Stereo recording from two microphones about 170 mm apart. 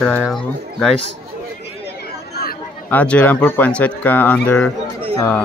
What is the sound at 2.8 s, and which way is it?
Speech, 10° left (ahead or behind).